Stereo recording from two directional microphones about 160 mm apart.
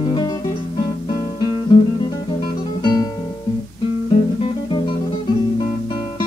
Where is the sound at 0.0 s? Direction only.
30° left (ahead or behind).